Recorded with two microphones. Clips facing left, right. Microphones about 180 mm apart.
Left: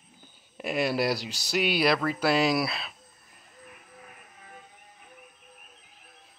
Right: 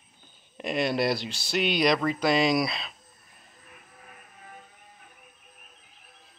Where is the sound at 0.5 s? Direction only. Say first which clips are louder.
Even; 5° left (ahead or behind).